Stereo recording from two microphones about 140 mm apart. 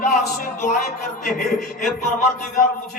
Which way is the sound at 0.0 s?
65° left (ahead or behind).